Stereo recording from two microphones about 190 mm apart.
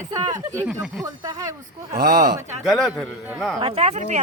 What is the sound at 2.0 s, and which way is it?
Speech, 55° right (ahead or behind).